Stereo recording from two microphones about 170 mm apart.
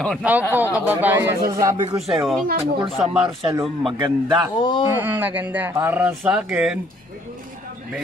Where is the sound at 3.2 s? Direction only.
30° right (ahead or behind).